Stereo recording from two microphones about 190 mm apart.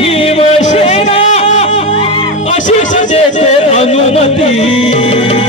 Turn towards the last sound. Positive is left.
turn(degrees=35)  # may be behind; listen again after turning